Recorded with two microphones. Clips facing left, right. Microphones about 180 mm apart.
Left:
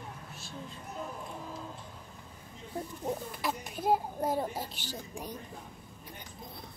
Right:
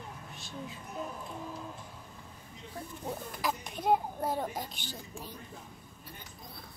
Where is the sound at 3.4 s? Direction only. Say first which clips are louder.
Right 1 dB; 5° left (ahead or behind).